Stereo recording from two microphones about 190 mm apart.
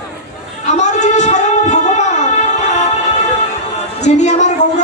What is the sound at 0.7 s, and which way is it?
Music, 40° left (ahead or behind).